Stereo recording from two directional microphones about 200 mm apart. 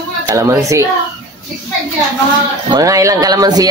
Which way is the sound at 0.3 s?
15° right (ahead or behind).